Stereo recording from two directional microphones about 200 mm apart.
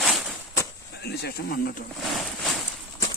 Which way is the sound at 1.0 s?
55° left (ahead or behind).